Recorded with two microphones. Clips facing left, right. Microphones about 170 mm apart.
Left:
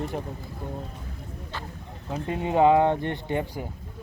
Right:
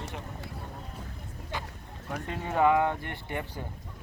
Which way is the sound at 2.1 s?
20° left (ahead or behind).